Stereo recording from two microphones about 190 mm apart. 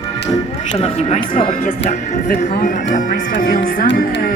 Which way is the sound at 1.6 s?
40° left (ahead or behind).